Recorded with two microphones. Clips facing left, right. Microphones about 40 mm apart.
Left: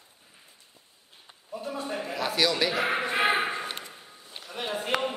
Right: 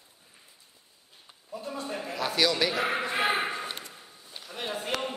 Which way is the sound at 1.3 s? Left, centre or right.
Centre.